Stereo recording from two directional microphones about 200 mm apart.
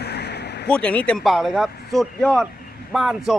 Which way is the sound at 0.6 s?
5° left (ahead or behind).